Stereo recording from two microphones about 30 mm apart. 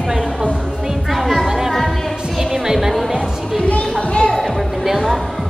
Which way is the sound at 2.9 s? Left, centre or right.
Centre.